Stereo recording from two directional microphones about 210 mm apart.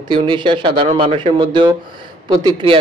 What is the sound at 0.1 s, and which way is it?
A man's voice, 25° right (ahead or behind).